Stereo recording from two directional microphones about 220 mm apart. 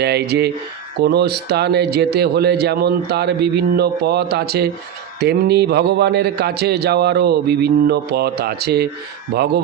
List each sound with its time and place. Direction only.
0.0 s speech: 50° right (ahead or behind)